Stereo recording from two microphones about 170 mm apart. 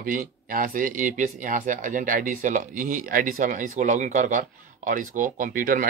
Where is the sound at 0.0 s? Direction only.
55° right (ahead or behind).